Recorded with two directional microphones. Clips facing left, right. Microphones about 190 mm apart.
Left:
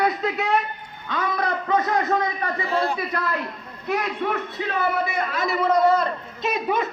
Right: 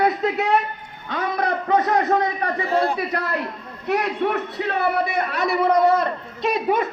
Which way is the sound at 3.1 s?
65° right (ahead or behind).